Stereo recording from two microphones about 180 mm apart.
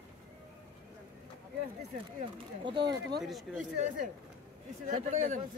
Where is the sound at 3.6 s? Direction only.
45° right (ahead or behind).